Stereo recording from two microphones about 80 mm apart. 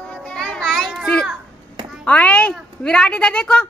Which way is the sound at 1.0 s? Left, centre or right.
Centre.